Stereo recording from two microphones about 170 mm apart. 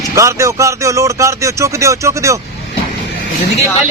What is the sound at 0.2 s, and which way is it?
Speech, 15° right (ahead or behind).